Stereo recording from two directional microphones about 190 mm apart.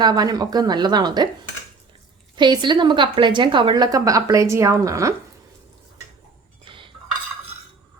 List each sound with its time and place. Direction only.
0.0 s a woman's voice: 20° right (ahead or behind)
2.3 s a woman's voice: 25° right (ahead or behind)
6.7 s cutlery: 25° right (ahead or behind)